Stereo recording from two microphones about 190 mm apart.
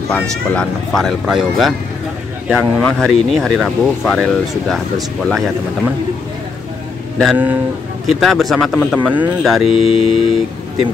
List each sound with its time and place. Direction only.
0.1 s speech: 5° left (ahead or behind)
7.2 s speech: 10° right (ahead or behind)
9.7 s speech: 30° left (ahead or behind)